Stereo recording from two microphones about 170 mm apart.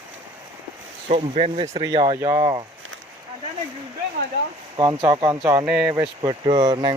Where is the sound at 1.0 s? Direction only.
35° right (ahead or behind).